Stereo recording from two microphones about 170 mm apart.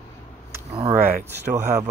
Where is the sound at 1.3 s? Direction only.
15° right (ahead or behind).